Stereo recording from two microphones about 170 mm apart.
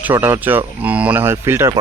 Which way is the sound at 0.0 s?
10° right (ahead or behind).